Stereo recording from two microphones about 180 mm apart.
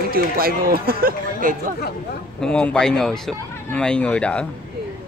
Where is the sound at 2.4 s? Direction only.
5° left (ahead or behind).